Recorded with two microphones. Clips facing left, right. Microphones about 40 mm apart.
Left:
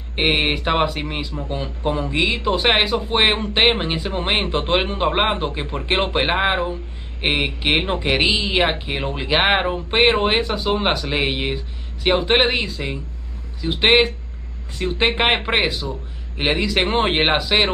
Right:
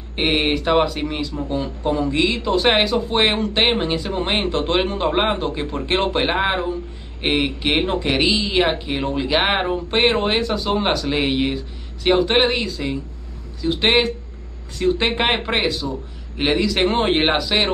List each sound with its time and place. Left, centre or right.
0.3 s speech: centre